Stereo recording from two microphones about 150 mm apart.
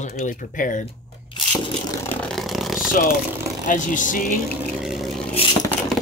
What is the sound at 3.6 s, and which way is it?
Speech, 60° left (ahead or behind).